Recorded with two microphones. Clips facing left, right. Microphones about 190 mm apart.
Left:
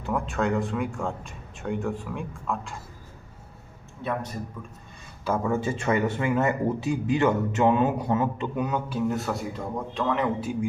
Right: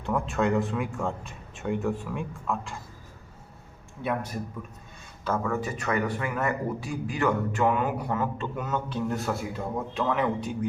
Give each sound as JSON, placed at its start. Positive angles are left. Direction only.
{"t": 0.0, "sound": "speech", "side_deg": 0}
{"t": 5.4, "sound": "speech", "side_deg": 25}